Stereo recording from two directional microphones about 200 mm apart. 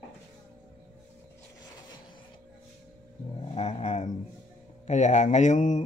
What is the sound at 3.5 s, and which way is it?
Speech, 35° left (ahead or behind).